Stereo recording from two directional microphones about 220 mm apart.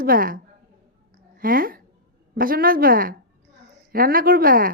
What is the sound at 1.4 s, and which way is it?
A woman's voice, 40° right (ahead or behind).